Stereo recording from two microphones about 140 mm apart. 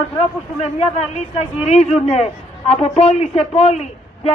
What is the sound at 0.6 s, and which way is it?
Speech, 50° left (ahead or behind).